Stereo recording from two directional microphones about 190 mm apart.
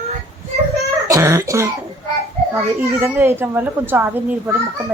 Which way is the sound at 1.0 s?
15° right (ahead or behind).